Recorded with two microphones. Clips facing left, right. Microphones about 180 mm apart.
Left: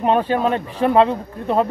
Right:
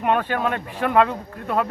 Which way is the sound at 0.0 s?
30° left (ahead or behind).